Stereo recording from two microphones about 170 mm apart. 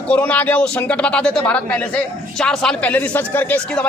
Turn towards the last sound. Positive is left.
turn(degrees=5)  # may be behind; listen again after turning